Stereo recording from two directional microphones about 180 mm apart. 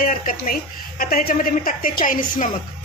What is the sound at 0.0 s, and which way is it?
Speech, 50° left (ahead or behind).